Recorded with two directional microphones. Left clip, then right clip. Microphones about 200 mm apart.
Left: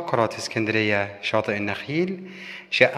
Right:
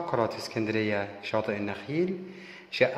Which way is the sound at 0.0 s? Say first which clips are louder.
Left 5 dB; 15° left (ahead or behind).